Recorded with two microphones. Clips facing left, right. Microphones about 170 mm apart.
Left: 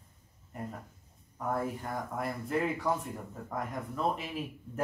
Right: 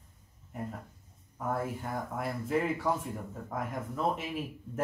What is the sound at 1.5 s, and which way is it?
Speech, centre (ahead or behind).